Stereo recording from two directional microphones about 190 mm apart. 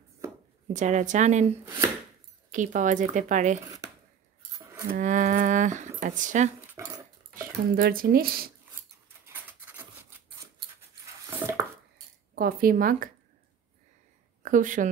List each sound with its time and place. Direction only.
0.7 s speech: 40° right (ahead or behind)
2.5 s speech: 40° right (ahead or behind)
3.6 s a sound: 20° right (ahead or behind)
4.8 s speech: 45° right (ahead or behind)
7.3 s speech: 50° right (ahead or behind)
9.2 s rub: 10° right (ahead or behind)
11.2 s a sound: 10° right (ahead or behind)
12.4 s speech: 50° right (ahead or behind)
14.4 s speech: 45° right (ahead or behind)